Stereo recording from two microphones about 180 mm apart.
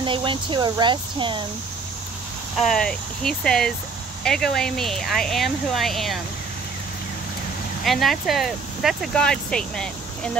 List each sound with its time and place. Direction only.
0.0 s speech: 30° right (ahead or behind)
2.5 s speech: centre (ahead or behind)
7.8 s speech: centre (ahead or behind)